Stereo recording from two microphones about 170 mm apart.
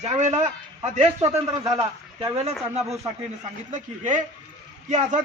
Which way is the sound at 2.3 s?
40° right (ahead or behind).